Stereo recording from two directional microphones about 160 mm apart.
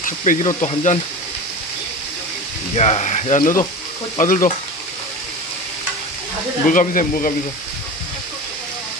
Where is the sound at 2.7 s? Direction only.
45° left (ahead or behind).